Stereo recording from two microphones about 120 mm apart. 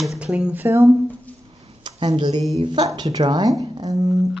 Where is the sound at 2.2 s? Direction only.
40° right (ahead or behind).